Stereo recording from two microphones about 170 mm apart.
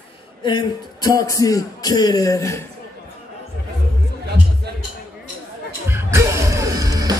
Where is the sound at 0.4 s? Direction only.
25° left (ahead or behind).